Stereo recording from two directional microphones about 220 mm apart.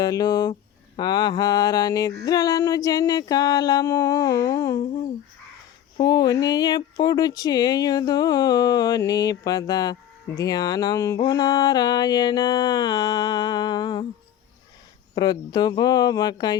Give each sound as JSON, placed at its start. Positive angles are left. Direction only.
{"t": 0.0, "sound": "speech", "side_deg": 15}
{"t": 6.0, "sound": "speech", "side_deg": 15}
{"t": 11.2, "sound": "music", "side_deg": 20}
{"t": 15.1, "sound": "music", "side_deg": 20}